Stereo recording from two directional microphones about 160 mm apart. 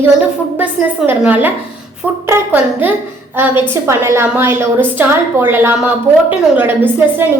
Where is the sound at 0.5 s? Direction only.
10° right (ahead or behind).